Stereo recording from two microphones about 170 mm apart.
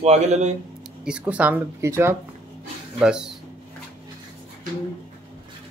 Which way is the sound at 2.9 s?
5° right (ahead or behind).